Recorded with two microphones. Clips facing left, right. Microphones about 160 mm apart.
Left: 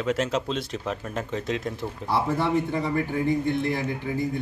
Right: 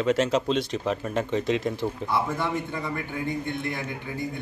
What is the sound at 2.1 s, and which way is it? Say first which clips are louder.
A man's voice: left 5 dB; 30° left (ahead or behind).